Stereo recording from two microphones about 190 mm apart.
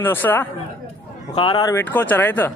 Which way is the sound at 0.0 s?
10° left (ahead or behind).